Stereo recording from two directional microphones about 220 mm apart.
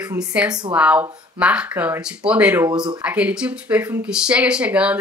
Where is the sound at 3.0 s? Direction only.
5° right (ahead or behind).